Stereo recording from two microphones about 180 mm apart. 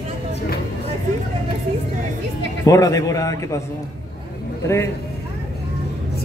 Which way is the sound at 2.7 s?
20° left (ahead or behind).